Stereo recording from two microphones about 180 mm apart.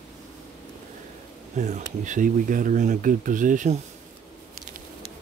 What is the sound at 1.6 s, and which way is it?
Speech, 45° right (ahead or behind).